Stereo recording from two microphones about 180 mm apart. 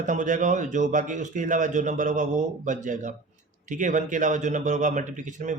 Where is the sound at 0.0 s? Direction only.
45° right (ahead or behind).